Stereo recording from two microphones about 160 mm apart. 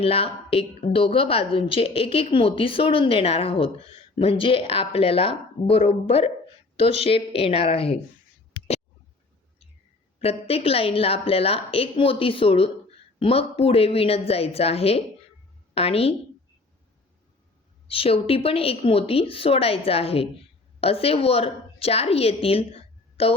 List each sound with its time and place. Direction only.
0.0 s a woman's voice: 35° left (ahead or behind)
8.5 s a sound: 40° left (ahead or behind)
10.2 s a woman's voice: 35° left (ahead or behind)
17.8 s a woman's voice: 35° left (ahead or behind)